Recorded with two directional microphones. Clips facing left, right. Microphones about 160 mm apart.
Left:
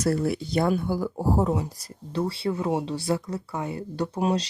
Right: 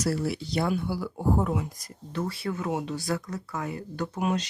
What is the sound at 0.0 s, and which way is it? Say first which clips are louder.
Speech: left 4 dB; 50° left (ahead or behind).